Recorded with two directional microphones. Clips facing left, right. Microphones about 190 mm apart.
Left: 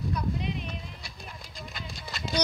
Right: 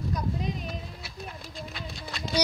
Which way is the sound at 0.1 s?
40° right (ahead or behind).